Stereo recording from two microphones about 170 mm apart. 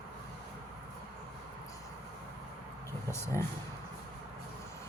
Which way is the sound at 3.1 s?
15° left (ahead or behind).